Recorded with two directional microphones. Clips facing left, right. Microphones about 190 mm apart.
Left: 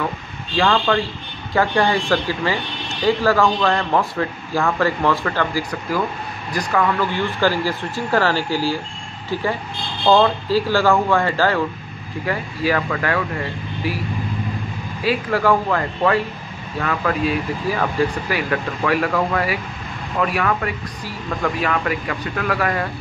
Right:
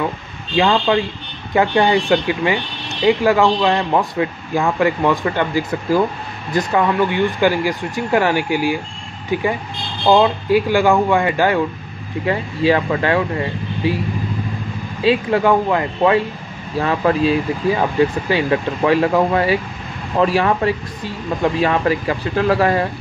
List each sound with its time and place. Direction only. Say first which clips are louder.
0.6 s speech: right 3 dB; 20° right (ahead or behind)
15.0 s speech: right 3 dB; 25° right (ahead or behind)